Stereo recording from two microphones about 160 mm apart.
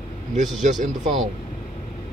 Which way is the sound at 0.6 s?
50° right (ahead or behind).